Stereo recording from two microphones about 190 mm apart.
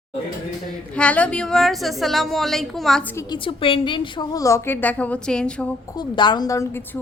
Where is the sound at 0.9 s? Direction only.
5° left (ahead or behind).